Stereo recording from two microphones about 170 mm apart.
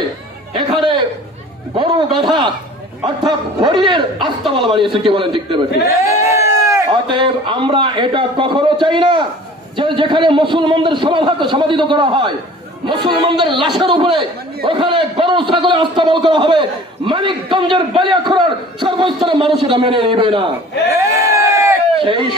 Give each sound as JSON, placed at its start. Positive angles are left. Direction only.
{"t": 0.6, "sound": "a sound", "side_deg": -30}
{"t": 1.8, "sound": "a man's voice", "side_deg": -30}
{"t": 5.9, "sound": "a man's voice", "side_deg": -20}
{"t": 7.1, "sound": "a man's voice", "side_deg": -30}
{"t": 20.9, "sound": "crowd", "side_deg": -15}
{"t": 21.9, "sound": "a sound", "side_deg": -30}